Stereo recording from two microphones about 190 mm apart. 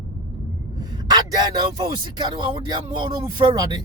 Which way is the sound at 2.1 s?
25° right (ahead or behind).